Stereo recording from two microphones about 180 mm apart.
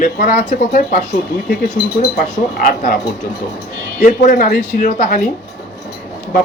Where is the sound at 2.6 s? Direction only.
50° left (ahead or behind).